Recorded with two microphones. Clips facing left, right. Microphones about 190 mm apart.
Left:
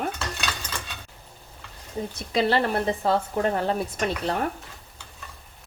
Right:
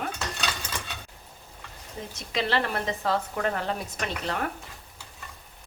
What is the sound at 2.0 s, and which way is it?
Speech, 35° left (ahead or behind).